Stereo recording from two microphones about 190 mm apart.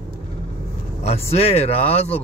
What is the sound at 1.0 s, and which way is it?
Speech, 35° left (ahead or behind).